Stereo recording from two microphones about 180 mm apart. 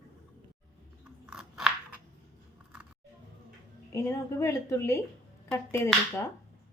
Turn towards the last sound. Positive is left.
turn(degrees=15)  # may be behind; listen again after turning